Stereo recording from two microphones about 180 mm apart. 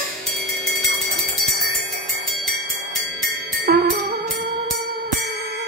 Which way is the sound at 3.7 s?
55° right (ahead or behind).